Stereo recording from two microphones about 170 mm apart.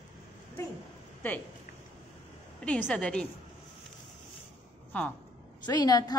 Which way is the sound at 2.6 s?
10° left (ahead or behind).